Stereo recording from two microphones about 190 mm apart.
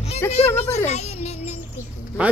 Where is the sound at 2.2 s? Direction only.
5° right (ahead or behind).